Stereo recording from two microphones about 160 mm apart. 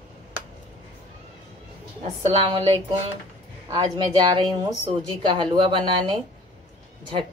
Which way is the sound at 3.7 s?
25° right (ahead or behind).